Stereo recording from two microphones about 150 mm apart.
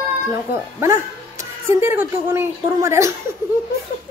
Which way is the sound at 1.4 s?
15° right (ahead or behind).